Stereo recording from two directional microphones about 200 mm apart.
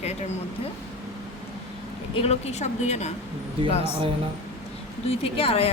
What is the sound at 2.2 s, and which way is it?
Speech, 35° left (ahead or behind).